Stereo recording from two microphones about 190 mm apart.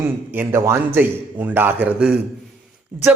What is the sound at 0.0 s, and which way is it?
A man's voice, 10° right (ahead or behind).